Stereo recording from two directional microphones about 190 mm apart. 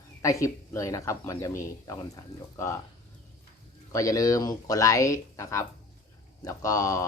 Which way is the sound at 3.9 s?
15° left (ahead or behind).